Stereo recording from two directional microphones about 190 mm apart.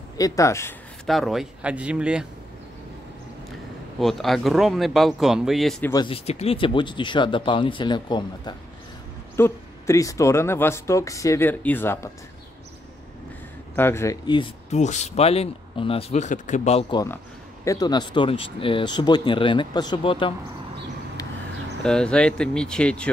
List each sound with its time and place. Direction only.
0.2 s speech: 15° left (ahead or behind)
1.0 s speech: centre (ahead or behind)
4.0 s speech: centre (ahead or behind)
6.0 s speech: 30° left (ahead or behind); by 12.1 s 10° left (ahead or behind)
13.7 s speech: 15° left (ahead or behind)
14.7 s speech: 35° left (ahead or behind)
16.9 s speech: 15° left (ahead or behind)
21.8 s speech: 5° left (ahead or behind)